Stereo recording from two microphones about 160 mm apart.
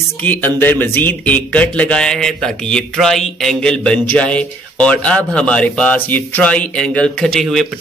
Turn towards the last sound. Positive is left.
turn(degrees=0)  # may be behind; listen again after turning